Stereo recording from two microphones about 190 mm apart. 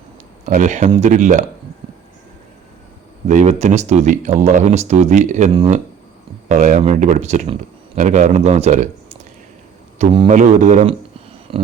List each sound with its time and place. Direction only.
0.4 s speech: 40° right (ahead or behind)
3.2 s speech: 40° right (ahead or behind)
10.0 s speech: 30° right (ahead or behind)
11.5 s a sound: 30° right (ahead or behind)